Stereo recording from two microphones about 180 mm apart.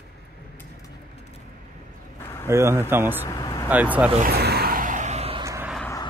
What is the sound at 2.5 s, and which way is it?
Speech, 15° right (ahead or behind).